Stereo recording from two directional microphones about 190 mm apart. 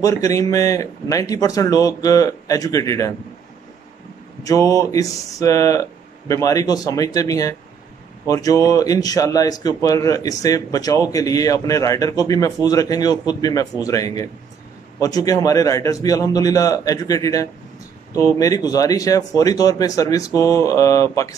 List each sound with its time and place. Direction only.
0.0 s speech: 15° left (ahead or behind)
4.4 s a man's voice: 20° left (ahead or behind)